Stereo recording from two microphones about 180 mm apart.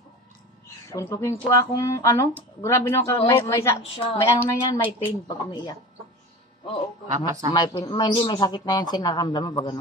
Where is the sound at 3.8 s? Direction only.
30° left (ahead or behind).